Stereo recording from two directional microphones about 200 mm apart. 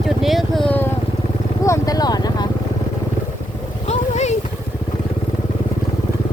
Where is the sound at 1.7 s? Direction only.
20° left (ahead or behind).